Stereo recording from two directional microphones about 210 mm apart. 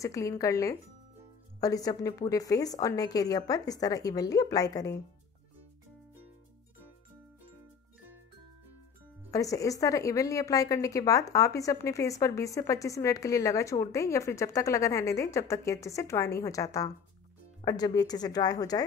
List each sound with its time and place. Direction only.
0.0 s a woman's voice: 15° left (ahead or behind)
9.3 s a woman's voice: 15° left (ahead or behind)